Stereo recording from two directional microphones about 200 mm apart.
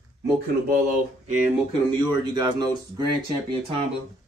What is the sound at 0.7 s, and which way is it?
Speech, 45° right (ahead or behind).